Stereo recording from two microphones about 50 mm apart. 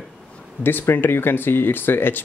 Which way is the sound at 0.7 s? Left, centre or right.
Left.